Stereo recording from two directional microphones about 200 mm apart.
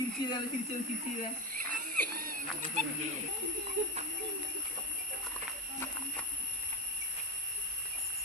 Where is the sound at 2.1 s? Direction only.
45° right (ahead or behind).